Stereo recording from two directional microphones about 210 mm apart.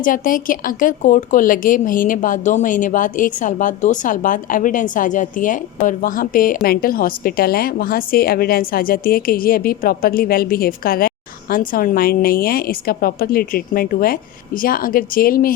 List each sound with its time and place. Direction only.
0.0 s a woman's voice: 40° left (ahead or behind)